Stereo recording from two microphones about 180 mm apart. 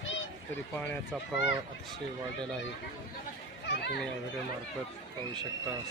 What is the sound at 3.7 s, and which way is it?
Chatter, 70° left (ahead or behind).